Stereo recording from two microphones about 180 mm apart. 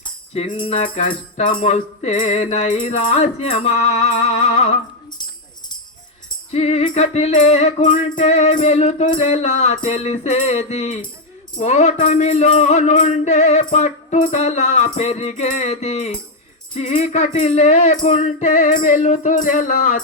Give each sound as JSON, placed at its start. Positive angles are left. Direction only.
{"t": 0.0, "sound": "music", "side_deg": 30}
{"t": 6.5, "sound": "music", "side_deg": 35}